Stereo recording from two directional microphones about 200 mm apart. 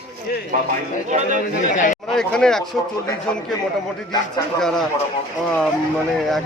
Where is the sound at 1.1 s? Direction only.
35° right (ahead or behind).